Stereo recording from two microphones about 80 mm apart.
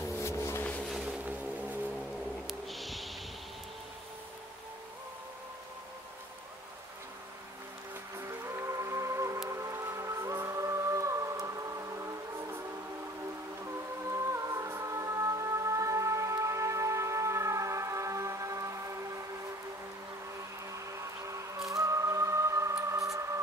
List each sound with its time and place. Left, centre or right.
0.2 s vehicle: left
1.0 s vehicle: centre
2.4 s cat: centre
8.2 s music: right
14.1 s music: right
20.7 s music: right
22.8 s a sound: right